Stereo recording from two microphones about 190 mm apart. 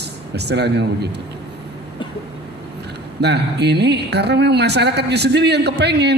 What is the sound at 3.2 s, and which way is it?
A woman's voice, 60° right (ahead or behind).